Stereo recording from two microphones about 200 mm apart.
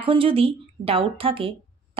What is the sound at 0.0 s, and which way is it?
A woman's voice, 25° right (ahead or behind).